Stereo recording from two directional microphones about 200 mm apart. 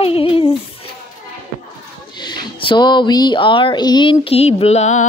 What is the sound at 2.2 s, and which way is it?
Speech, 20° left (ahead or behind).